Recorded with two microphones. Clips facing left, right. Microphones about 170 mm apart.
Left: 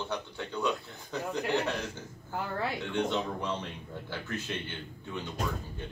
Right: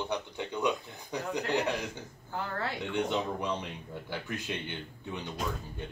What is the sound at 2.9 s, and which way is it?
Speech, 10° right (ahead or behind).